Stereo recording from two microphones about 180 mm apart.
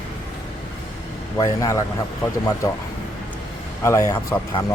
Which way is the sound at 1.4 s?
20° left (ahead or behind).